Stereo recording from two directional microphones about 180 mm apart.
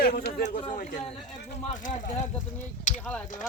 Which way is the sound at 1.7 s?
45° left (ahead or behind).